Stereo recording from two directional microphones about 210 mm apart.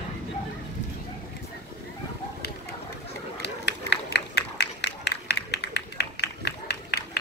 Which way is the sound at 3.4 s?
55° left (ahead or behind).